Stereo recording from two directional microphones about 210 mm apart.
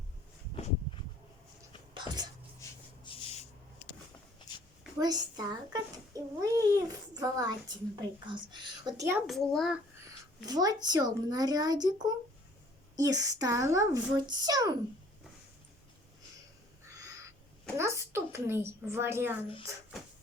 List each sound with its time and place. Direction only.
1.9 s a sound: 20° right (ahead or behind)
2.6 s rub: 25° left (ahead or behind)
4.9 s a woman's voice: 20° right (ahead or behind)
9.2 s a child's voice: centre (ahead or behind)
10.4 s a woman's voice: 20° right (ahead or behind)
17.7 s a woman's voice: 15° right (ahead or behind)